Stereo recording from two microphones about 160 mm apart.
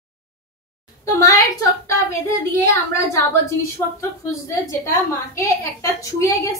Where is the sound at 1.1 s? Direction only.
20° left (ahead or behind).